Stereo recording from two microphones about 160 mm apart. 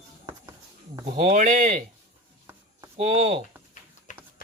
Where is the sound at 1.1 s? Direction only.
50° right (ahead or behind).